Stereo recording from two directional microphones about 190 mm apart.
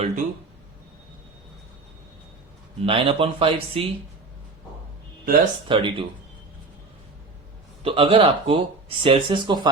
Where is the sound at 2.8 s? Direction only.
30° right (ahead or behind).